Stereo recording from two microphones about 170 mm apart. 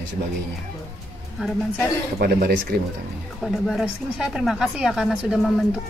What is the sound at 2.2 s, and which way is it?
Speech, 60° right (ahead or behind).